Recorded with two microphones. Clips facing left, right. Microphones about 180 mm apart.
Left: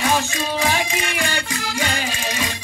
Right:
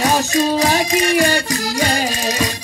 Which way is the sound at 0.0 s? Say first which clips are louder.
Right 6 dB; 40° right (ahead or behind).